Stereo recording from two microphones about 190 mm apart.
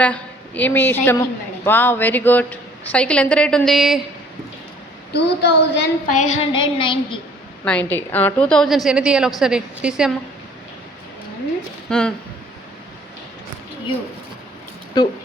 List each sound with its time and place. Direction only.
0.0 s a woman's voice: 10° left (ahead or behind)
5.1 s speech: 60° left (ahead or behind)
6.1 s child singing: 40° left (ahead or behind)
6.5 s a woman's voice: 25° left (ahead or behind)
7.6 s a woman's voice: 5° left (ahead or behind)
11.9 s speech: 5° left (ahead or behind)
15.0 s a woman's voice: 20° left (ahead or behind)